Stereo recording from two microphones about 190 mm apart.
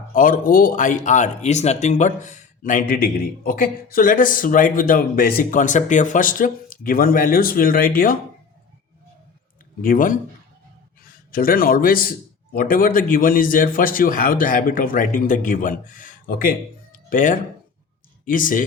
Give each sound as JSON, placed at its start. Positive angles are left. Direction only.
{"t": 0.1, "sound": "speech", "side_deg": 45}
{"t": 9.8, "sound": "speech", "side_deg": 45}
{"t": 11.3, "sound": "speech", "side_deg": 50}